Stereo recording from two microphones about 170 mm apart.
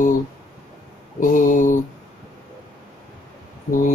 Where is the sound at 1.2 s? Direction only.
50° left (ahead or behind).